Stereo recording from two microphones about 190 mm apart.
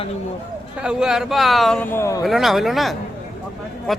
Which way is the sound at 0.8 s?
5° right (ahead or behind).